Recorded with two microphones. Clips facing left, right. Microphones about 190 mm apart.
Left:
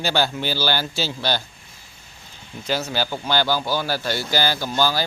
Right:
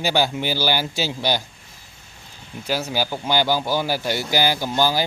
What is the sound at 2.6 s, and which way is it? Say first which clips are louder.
Speech: even; 10° right (ahead or behind).